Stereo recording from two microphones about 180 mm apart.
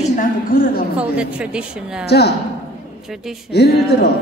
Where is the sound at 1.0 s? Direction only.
5° right (ahead or behind).